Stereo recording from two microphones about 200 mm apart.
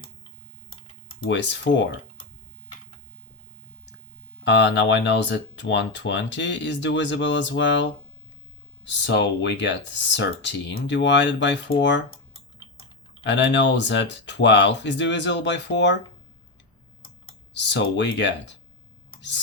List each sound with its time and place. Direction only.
1.3 s speech: 65° left (ahead or behind)
4.4 s speech: 60° left (ahead or behind)
13.2 s speech: 60° left (ahead or behind)
17.5 s speech: 60° left (ahead or behind)